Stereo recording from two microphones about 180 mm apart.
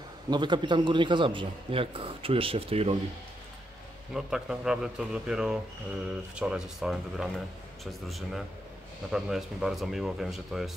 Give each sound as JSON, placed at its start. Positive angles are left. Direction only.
{"t": 0.3, "sound": "a man's voice", "side_deg": -25}
{"t": 4.1, "sound": "speech", "side_deg": -5}